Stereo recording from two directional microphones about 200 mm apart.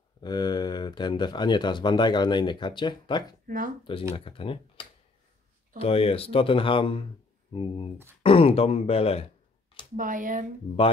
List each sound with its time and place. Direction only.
0.2 s speech: 20° left (ahead or behind)
3.4 s speech: 45° right (ahead or behind)
4.1 s speech: 30° left (ahead or behind)
9.9 s speech: 40° right (ahead or behind)